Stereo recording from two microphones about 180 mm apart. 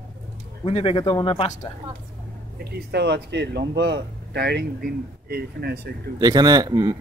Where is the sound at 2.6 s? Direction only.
65° right (ahead or behind).